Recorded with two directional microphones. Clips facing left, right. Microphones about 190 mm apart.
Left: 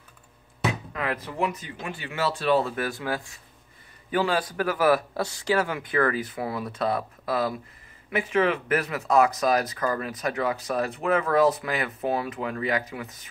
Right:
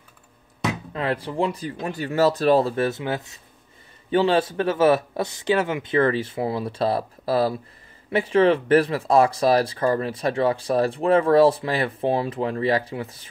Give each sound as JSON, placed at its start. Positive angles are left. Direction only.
{"t": 0.9, "sound": "speech", "side_deg": -30}